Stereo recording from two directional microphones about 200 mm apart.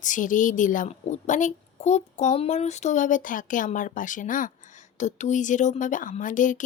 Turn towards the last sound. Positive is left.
turn(degrees=40)  # may be behind; listen again after turning